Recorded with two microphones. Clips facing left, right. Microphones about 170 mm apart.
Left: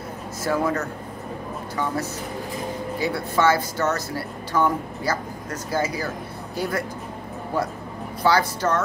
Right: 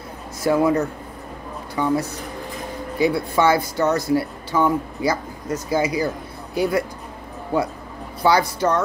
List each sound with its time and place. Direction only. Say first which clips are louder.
0.4 s speech: right 6 dB; 15° right (ahead or behind)
3.0 s speech: right 4 dB; 15° right (ahead or behind)
8.2 s speech: right 3 dB; 15° right (ahead or behind)